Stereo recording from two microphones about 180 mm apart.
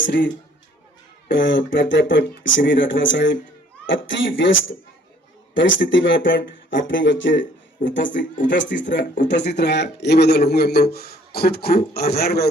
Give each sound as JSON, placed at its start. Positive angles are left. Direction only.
{"t": 0.0, "sound": "a man's voice", "side_deg": 90}
{"t": 1.3, "sound": "speech", "side_deg": 90}
{"t": 5.5, "sound": "a man's voice", "side_deg": 90}